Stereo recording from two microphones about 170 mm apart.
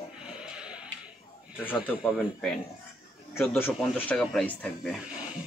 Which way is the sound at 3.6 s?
10° left (ahead or behind).